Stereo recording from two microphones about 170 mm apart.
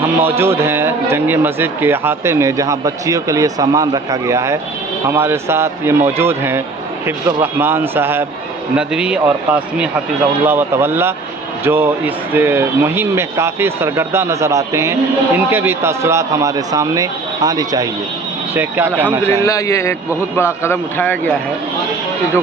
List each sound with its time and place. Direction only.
0.2 s speech: 15° right (ahead or behind)
18.5 s speech: 10° right (ahead or behind)
19.2 s a man's voice: 15° left (ahead or behind)